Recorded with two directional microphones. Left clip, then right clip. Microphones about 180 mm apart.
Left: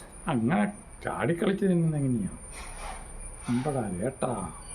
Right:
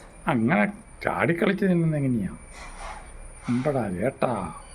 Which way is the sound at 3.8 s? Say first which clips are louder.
Right 5 dB; 30° right (ahead or behind).